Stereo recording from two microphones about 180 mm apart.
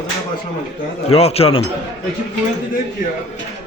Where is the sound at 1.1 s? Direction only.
35° left (ahead or behind).